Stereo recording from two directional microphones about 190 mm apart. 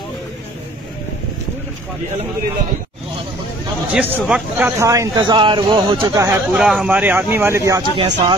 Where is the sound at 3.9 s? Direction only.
5° right (ahead or behind).